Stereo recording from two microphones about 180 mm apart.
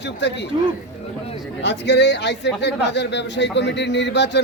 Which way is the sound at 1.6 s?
75° left (ahead or behind).